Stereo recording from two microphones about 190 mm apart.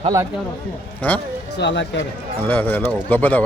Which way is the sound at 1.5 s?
65° left (ahead or behind).